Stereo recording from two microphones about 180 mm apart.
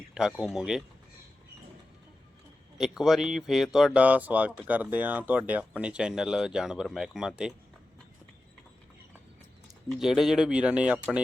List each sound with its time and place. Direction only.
0.1 s speech: centre (ahead or behind)
2.7 s speech: centre (ahead or behind)
9.6 s speech: 5° right (ahead or behind)